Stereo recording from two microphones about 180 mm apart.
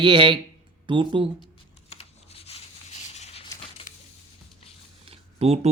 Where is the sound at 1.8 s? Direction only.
35° left (ahead or behind).